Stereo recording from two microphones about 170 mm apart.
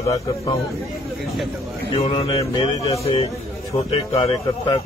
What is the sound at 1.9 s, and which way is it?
Speech, 30° left (ahead or behind).